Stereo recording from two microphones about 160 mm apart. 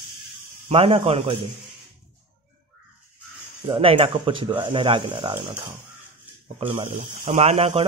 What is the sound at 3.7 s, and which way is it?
A man's voice, 35° right (ahead or behind).